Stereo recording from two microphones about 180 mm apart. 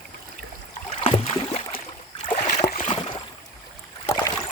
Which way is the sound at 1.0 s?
30° left (ahead or behind).